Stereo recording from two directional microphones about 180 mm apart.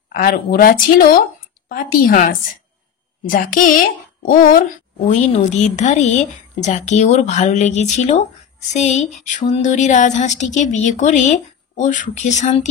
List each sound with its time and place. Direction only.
0.1 s speech: 55° left (ahead or behind)
4.9 s speech: 40° left (ahead or behind)